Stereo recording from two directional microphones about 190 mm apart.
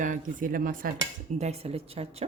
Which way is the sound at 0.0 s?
45° right (ahead or behind).